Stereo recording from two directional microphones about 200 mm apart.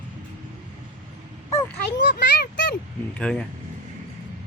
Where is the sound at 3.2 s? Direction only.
5° left (ahead or behind).